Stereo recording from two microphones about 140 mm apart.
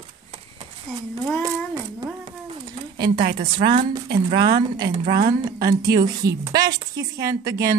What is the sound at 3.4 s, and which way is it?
Speech, 35° right (ahead or behind).